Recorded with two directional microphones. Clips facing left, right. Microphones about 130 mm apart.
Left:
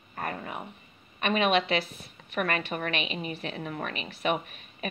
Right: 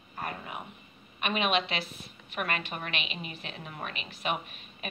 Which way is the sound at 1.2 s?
20° right (ahead or behind).